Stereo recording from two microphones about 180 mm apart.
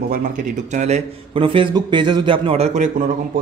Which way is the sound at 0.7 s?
40° right (ahead or behind).